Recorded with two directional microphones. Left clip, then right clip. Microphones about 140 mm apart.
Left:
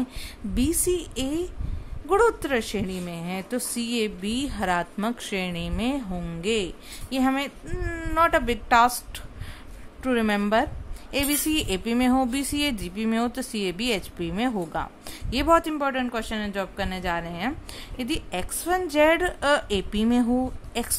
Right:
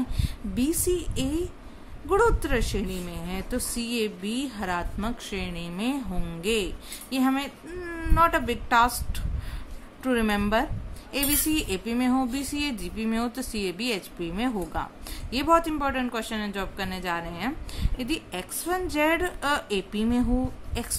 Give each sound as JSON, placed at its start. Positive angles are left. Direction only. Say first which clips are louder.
{"t": 0.2, "sound": "a woman's voice", "louder": "left 2 dB", "side_deg": 45}